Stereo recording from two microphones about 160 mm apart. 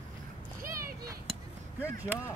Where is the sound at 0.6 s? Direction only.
70° right (ahead or behind).